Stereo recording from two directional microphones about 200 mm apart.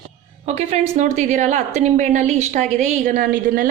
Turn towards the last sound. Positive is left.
turn(degrees=-45)  # may be behind; listen again after turning